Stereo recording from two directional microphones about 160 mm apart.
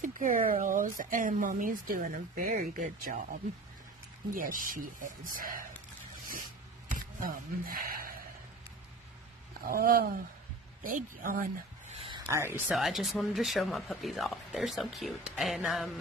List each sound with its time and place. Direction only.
0.0 s speech: 55° right (ahead or behind)
4.3 s speech: 60° right (ahead or behind)
6.9 s a sound: 55° right (ahead or behind)
9.5 s speech: 65° right (ahead or behind)
12.3 s speech: 15° right (ahead or behind)
12.6 s speech: centre (ahead or behind)